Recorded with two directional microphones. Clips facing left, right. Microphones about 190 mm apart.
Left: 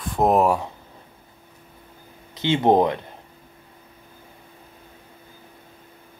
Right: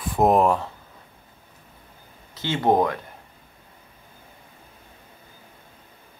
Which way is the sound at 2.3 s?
20° left (ahead or behind).